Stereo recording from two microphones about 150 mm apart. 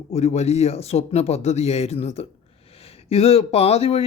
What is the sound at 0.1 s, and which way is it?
Speech, 45° left (ahead or behind).